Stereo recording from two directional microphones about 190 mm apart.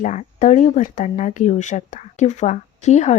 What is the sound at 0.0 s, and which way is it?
Speech, 40° left (ahead or behind).